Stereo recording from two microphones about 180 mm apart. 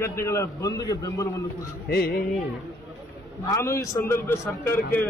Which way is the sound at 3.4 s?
15° left (ahead or behind).